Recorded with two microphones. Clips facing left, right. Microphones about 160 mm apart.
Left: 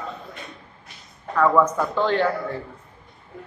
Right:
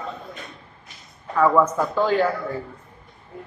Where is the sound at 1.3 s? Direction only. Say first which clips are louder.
Even; 10° right (ahead or behind).